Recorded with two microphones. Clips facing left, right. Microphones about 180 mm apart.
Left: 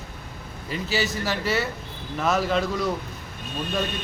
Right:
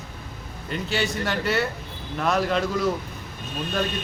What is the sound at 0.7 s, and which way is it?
Speech, 5° left (ahead or behind).